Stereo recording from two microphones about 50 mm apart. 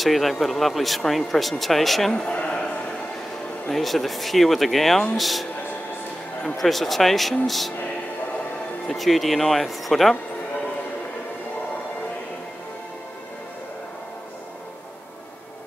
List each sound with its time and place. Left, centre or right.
0.0 s speech: centre
2.2 s a man's voice: centre
3.6 s speech: centre
6.6 s speech: centre
8.8 s speech: centre